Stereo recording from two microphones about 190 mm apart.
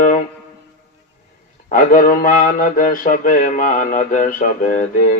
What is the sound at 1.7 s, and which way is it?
Speech, 50° left (ahead or behind).